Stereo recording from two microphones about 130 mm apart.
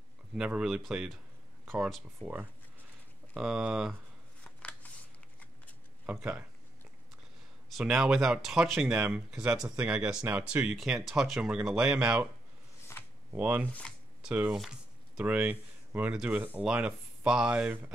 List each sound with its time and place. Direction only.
0.3 s speech: 5° right (ahead or behind)
3.3 s speech: 5° right (ahead or behind)
4.8 s shuffling cards: 10° left (ahead or behind)
6.0 s speech: 5° right (ahead or behind)
7.7 s speech: 5° right (ahead or behind)
12.9 s a sound: 20° left (ahead or behind)
13.3 s speech: 10° right (ahead or behind)